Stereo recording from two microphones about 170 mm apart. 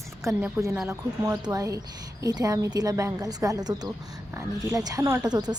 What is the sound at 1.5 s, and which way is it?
Speech, 20° right (ahead or behind).